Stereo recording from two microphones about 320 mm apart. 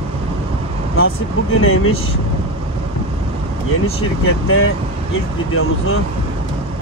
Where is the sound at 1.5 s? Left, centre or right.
Left.